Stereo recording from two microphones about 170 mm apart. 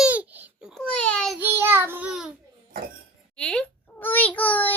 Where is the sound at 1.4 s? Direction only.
15° right (ahead or behind).